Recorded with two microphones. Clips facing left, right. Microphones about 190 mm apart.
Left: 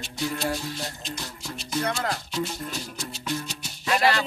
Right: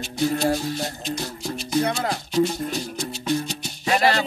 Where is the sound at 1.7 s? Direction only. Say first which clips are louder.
Right 5 dB; 20° right (ahead or behind).